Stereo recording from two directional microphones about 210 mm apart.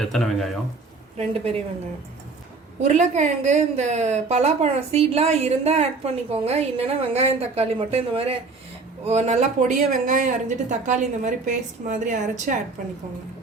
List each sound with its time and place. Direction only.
0.0 s speech: centre (ahead or behind)
1.3 s a woman's voice: 30° right (ahead or behind)
2.8 s a woman's voice: 35° right (ahead or behind)